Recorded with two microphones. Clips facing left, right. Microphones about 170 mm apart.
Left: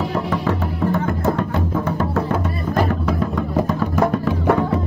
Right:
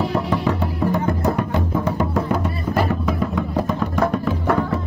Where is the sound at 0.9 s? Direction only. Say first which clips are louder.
Left 1 dB; 15° right (ahead or behind).